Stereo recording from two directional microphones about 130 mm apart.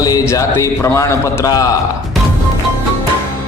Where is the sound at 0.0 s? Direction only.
25° left (ahead or behind).